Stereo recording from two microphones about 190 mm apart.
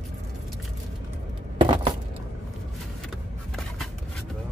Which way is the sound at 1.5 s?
25° right (ahead or behind).